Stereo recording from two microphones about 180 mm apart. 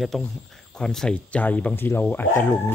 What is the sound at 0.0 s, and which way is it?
Speech, centre (ahead or behind).